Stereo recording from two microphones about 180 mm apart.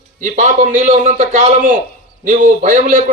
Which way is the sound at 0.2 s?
45° right (ahead or behind).